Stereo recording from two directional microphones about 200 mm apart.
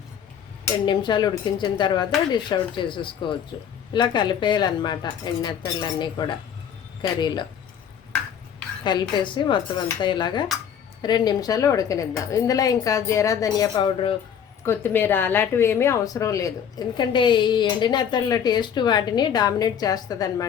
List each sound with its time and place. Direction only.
0.9 s a woman's voice: 20° left (ahead or behind)
8.8 s a woman's voice: 20° left (ahead or behind)
14.6 s a woman's voice: 10° left (ahead or behind)